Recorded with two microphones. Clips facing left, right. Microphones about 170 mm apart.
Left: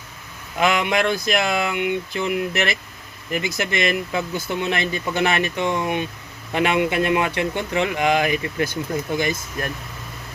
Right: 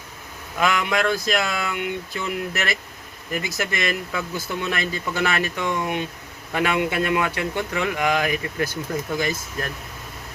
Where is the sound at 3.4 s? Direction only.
20° left (ahead or behind).